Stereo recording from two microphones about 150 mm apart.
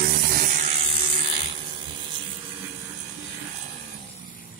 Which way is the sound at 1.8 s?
30° right (ahead or behind).